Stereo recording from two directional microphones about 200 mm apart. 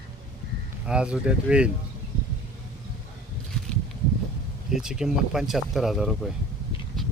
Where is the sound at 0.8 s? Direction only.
5° right (ahead or behind).